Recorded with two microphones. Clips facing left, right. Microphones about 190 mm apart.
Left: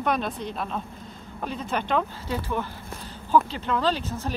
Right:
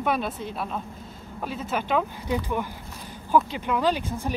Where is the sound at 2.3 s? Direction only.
15° right (ahead or behind).